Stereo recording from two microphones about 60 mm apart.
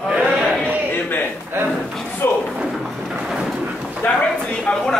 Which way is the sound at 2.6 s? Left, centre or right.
Centre.